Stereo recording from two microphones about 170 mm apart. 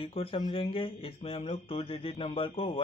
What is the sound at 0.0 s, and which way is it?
Speech, 35° left (ahead or behind).